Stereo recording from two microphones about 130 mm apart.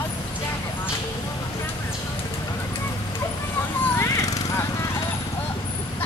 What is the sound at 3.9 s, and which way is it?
Horse, 20° left (ahead or behind).